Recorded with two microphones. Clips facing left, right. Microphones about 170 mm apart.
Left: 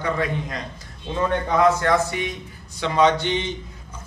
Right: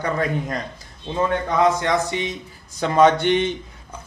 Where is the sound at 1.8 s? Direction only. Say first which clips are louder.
Left 1 dB; 20° right (ahead or behind).